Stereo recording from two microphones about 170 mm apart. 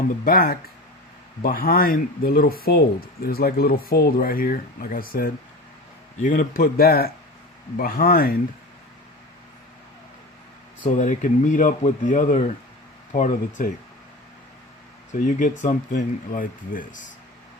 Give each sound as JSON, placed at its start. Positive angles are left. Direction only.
{"t": 0.3, "sound": "speech", "side_deg": 60}
{"t": 10.8, "sound": "speech", "side_deg": 45}
{"t": 15.1, "sound": "speech", "side_deg": 50}